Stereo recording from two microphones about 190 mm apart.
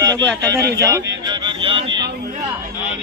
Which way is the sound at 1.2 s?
25° right (ahead or behind).